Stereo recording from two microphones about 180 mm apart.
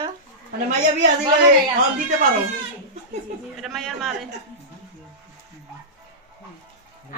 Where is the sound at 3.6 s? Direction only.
Centre (ahead or behind).